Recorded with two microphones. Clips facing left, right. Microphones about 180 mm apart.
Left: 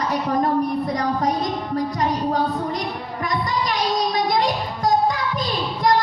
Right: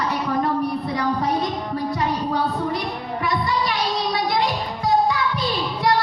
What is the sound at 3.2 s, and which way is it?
Child singing, 45° left (ahead or behind).